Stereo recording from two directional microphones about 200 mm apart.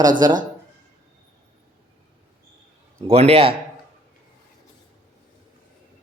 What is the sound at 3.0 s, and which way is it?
Speech, 30° right (ahead or behind).